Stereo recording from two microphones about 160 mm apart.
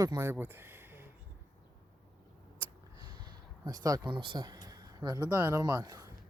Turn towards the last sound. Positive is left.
turn(degrees=-20)  # may be behind; listen again after turning